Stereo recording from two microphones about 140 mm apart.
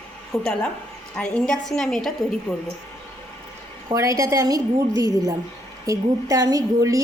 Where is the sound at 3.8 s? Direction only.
20° right (ahead or behind).